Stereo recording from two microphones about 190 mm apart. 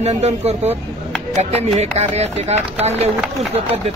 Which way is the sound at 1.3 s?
35° right (ahead or behind).